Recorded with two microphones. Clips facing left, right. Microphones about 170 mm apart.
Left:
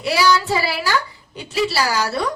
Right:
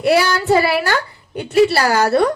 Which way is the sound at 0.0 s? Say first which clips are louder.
Right 3 dB; 55° right (ahead or behind).